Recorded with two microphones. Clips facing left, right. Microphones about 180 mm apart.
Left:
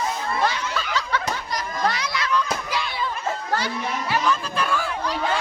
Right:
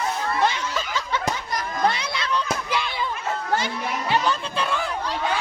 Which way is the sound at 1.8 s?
25° right (ahead or behind).